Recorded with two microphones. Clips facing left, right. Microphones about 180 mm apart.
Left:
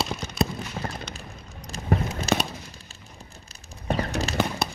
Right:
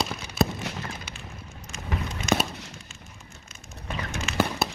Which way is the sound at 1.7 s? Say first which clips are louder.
Left 7 dB; 35° left (ahead or behind).